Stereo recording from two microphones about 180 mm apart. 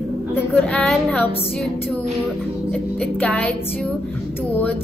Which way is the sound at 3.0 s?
10° left (ahead or behind).